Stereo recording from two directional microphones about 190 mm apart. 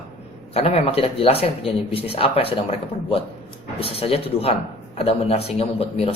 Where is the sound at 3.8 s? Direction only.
30° left (ahead or behind).